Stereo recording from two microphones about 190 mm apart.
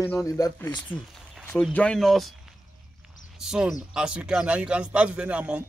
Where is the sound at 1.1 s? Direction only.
5° left (ahead or behind).